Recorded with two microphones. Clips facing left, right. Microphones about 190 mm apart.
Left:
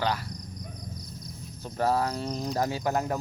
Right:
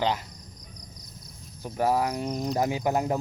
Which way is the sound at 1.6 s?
10° right (ahead or behind).